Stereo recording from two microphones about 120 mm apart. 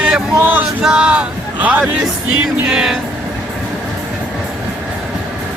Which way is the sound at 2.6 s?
5° right (ahead or behind).